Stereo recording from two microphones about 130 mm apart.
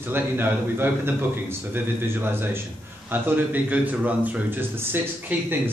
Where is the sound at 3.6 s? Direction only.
10° right (ahead or behind).